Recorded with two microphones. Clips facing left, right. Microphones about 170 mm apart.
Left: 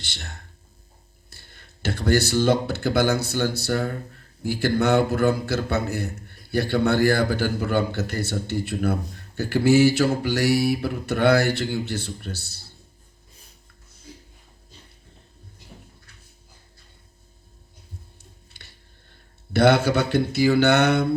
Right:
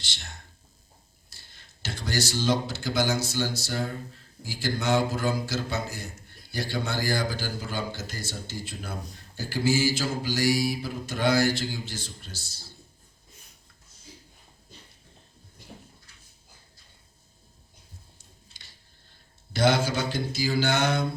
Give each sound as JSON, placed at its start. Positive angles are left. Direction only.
{"t": 0.0, "sound": "speech", "side_deg": 60}
{"t": 18.4, "sound": "a sound", "side_deg": 60}
{"t": 19.5, "sound": "speech", "side_deg": 65}